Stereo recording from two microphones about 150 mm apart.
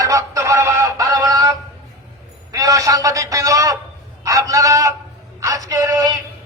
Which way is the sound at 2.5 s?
20° right (ahead or behind).